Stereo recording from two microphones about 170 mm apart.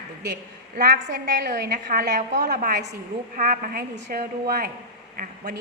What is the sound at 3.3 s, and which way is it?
A woman's voice, 55° right (ahead or behind).